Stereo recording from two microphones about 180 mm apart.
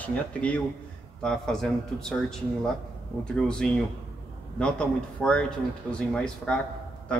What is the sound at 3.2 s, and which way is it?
Speech, 5° left (ahead or behind).